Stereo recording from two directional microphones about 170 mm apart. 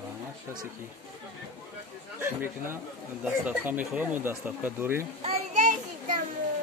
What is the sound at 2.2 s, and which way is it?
Speech, 15° right (ahead or behind).